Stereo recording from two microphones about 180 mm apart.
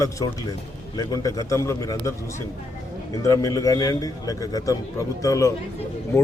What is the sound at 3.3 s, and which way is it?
A man's voice, 20° left (ahead or behind).